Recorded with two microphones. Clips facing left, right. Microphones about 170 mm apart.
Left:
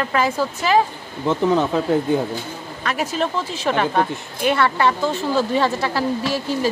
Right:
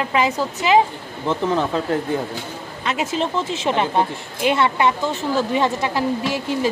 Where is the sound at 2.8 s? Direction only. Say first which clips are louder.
Even; 20° right (ahead or behind).